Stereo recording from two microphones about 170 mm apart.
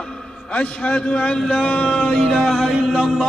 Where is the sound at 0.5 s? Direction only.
10° left (ahead or behind).